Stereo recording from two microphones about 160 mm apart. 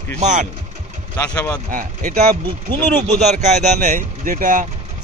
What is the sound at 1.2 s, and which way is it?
Speech, 15° left (ahead or behind).